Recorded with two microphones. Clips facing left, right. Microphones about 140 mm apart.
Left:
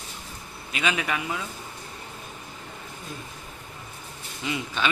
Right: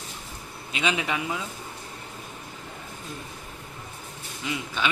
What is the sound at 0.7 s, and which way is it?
Speech, 20° right (ahead or behind).